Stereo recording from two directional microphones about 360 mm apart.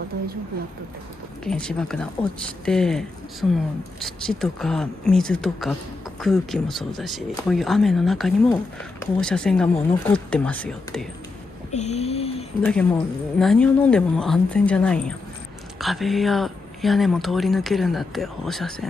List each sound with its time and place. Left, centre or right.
1.4 s speech: centre
11.7 s a sound: centre
12.6 s speech: centre